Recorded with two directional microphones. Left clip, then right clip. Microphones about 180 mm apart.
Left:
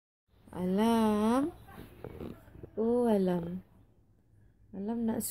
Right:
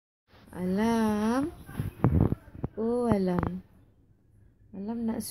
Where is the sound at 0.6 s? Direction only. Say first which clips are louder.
Right 1 dB; 35° left (ahead or behind).